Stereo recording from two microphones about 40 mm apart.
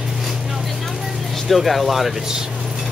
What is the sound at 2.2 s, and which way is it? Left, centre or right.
Vehicle, centre.